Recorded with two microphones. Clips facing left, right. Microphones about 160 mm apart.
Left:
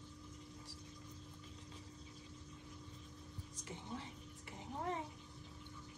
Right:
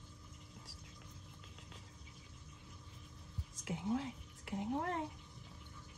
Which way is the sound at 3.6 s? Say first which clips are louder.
Right 11 dB; 90° right.